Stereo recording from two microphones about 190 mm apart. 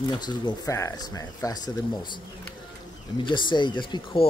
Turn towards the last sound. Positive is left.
turn(degrees=25)  # may be behind; listen again after turning